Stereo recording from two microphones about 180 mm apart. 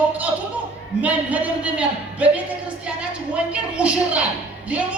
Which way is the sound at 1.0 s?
10° right (ahead or behind).